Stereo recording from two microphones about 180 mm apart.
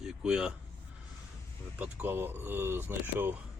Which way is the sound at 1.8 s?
10° right (ahead or behind).